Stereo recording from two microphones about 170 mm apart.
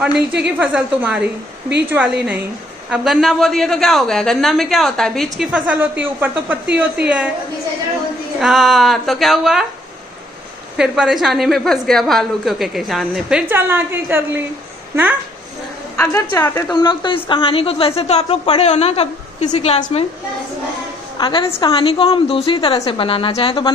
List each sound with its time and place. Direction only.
0.4 s a man's voice: 5° right (ahead or behind)
8.4 s a woman's voice: centre (ahead or behind)
10.8 s a woman's voice: 5° right (ahead or behind)
13.5 s a man's voice: 15° right (ahead or behind)
16.0 s a woman's voice: 15° left (ahead or behind); by 20.1 s 40° left (ahead or behind)
21.2 s a woman's voice: 30° left (ahead or behind)